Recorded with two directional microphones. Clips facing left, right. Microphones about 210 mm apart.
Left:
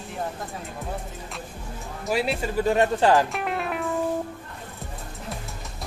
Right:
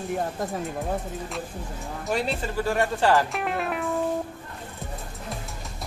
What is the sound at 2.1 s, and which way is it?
Speech, 5° left (ahead or behind).